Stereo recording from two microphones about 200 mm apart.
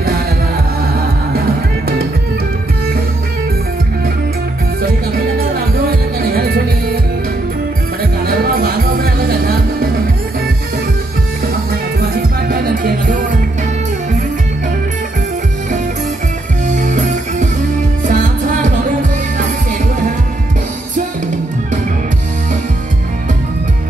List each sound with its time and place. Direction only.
4.8 s music: 50° right (ahead or behind)
8.3 s music: 45° right (ahead or behind)
12.0 s music: 50° right (ahead or behind)
16.6 s music: 40° right (ahead or behind)